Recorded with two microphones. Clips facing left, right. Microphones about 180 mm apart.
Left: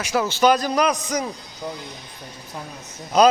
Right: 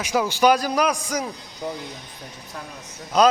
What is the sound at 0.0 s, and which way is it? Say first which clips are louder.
A man's voice: even; 10° right (ahead or behind).